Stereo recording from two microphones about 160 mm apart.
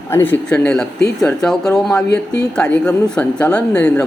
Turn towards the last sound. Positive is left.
turn(degrees=10)  # may be behind; listen again after turning